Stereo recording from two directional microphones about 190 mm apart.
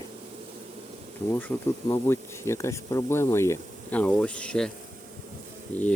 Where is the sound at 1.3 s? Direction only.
10° left (ahead or behind).